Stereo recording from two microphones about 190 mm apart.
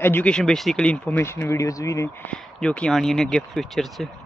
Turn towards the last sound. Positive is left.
turn(degrees=0)  # may be behind; listen again after turning